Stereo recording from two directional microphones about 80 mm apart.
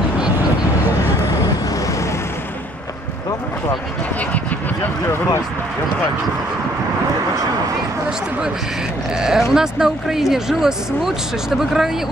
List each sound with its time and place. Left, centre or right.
1.7 s vehicle: left
9.1 s speech: centre